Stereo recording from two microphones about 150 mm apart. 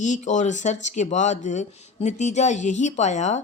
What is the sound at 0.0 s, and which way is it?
A woman's voice, 55° left (ahead or behind).